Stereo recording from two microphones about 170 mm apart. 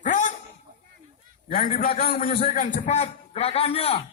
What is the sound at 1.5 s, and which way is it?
A man's voice, 60° left (ahead or behind).